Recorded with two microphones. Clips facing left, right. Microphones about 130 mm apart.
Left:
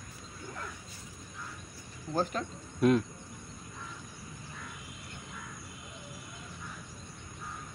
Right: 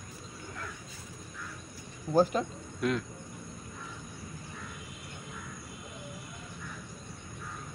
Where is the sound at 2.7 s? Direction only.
20° left (ahead or behind).